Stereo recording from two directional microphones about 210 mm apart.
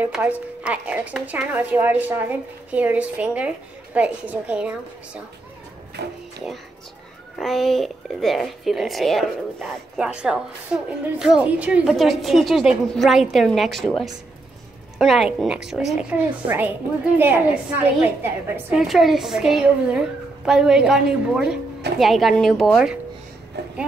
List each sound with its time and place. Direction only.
0.0 s a woman's voice: 5° right (ahead or behind)
7.3 s a woman's voice: centre (ahead or behind)